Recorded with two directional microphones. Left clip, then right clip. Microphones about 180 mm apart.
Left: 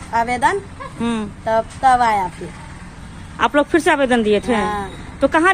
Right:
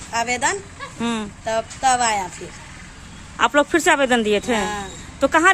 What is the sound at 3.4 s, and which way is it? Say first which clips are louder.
Speech: left 1 dB; 10° right (ahead or behind).